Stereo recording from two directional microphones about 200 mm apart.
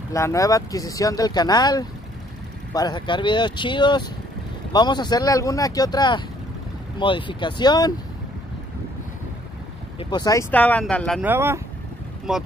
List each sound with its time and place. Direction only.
0.1 s speech: 15° left (ahead or behind)
9.9 s speech: 20° left (ahead or behind)
10.5 s speech: 5° left (ahead or behind)
11.1 s speech: 10° right (ahead or behind)